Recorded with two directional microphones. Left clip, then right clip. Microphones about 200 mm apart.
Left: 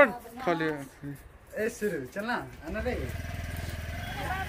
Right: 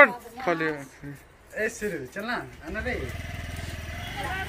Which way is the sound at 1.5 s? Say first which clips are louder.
Right 2 dB; 30° left (ahead or behind).